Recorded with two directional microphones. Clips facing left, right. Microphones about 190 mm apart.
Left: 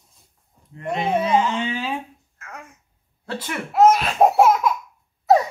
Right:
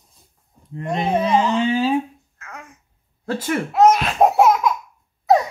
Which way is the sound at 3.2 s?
45° right (ahead or behind).